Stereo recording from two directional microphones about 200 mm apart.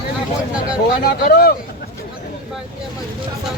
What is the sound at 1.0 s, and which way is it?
Speech, 50° left (ahead or behind).